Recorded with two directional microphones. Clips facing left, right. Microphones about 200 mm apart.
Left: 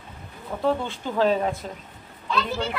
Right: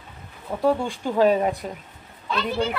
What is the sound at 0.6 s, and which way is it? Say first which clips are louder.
Speech: right 3 dB; 15° right (ahead or behind).